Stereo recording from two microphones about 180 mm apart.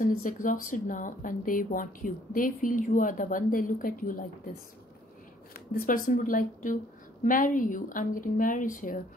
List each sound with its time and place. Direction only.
0.0 s speech: 45° left (ahead or behind)
5.5 s speech: 50° left (ahead or behind)